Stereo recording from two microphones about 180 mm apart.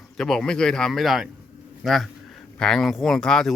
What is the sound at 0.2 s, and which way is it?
Speech, 5° left (ahead or behind).